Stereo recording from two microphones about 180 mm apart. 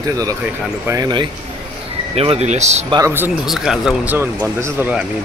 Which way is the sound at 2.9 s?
15° right (ahead or behind).